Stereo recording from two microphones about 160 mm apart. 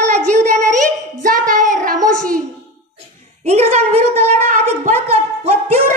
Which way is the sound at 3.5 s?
40° right (ahead or behind).